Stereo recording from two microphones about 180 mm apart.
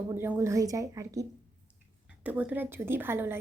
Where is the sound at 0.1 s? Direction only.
15° right (ahead or behind).